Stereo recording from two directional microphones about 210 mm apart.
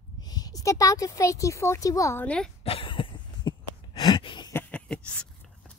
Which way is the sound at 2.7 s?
25° left (ahead or behind).